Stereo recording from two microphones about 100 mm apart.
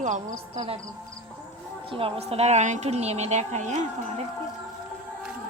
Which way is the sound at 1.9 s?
65° right (ahead or behind).